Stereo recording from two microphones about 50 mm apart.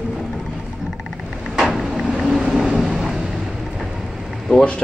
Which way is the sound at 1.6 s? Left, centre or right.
Centre.